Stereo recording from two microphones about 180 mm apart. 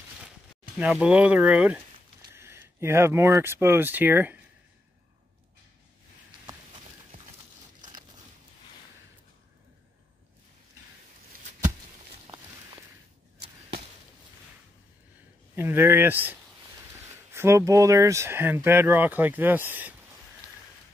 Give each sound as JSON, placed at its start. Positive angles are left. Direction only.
{"t": 0.7, "sound": "speech", "side_deg": -5}
{"t": 7.1, "sound": "a sound", "side_deg": -55}
{"t": 15.5, "sound": "speech", "side_deg": -10}